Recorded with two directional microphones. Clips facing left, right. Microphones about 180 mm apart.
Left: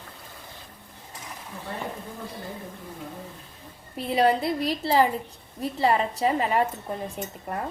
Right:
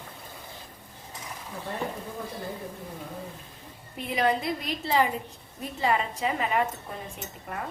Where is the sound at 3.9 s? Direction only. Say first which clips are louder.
Left 4 dB; 35° left (ahead or behind).